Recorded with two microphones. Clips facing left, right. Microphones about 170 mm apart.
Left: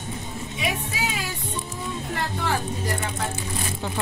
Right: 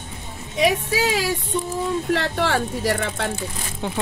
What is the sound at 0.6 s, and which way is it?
Music, 90° right.